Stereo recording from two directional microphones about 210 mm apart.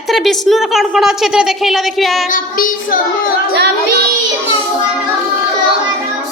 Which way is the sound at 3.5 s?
50° right (ahead or behind).